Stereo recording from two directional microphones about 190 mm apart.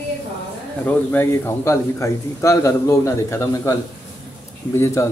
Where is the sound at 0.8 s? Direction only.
10° left (ahead or behind).